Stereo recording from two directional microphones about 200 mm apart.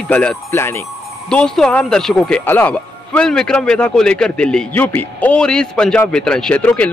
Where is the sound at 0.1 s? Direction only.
5° left (ahead or behind).